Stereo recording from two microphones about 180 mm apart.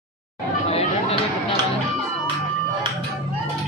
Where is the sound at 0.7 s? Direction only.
35° left (ahead or behind).